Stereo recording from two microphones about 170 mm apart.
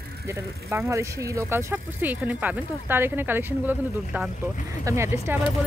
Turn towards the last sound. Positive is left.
turn(degrees=-15)  # may be behind; listen again after turning